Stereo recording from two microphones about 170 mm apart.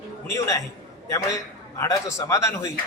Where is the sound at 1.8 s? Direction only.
20° left (ahead or behind).